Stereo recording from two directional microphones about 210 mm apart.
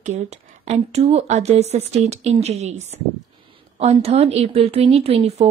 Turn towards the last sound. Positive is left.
turn(degrees=-30)  # may be behind; listen again after turning